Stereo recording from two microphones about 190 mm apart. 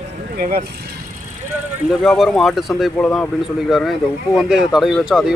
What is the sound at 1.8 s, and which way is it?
Speech, centre (ahead or behind).